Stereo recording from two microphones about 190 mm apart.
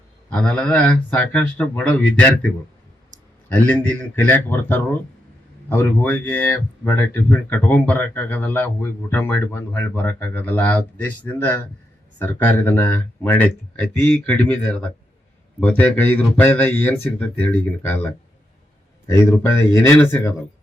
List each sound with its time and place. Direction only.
0.3 s speech: 5° left (ahead or behind)
3.1 s clicking: 40° right (ahead or behind)
3.5 s speech: 10° left (ahead or behind)